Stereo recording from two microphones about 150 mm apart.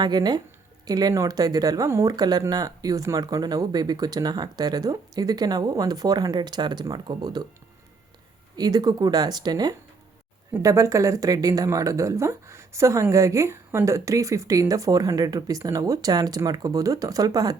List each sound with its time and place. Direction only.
0.0 s speech: 30° right (ahead or behind)
8.5 s speech: 25° right (ahead or behind)